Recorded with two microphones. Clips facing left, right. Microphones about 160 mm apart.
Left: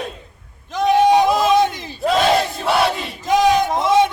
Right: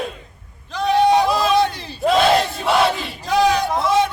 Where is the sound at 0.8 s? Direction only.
15° left (ahead or behind).